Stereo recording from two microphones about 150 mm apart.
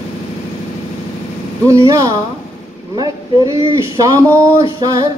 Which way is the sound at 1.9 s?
20° right (ahead or behind).